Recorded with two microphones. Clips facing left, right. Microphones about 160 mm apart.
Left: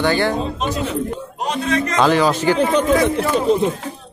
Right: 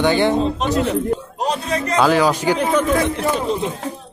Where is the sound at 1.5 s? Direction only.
35° right (ahead or behind).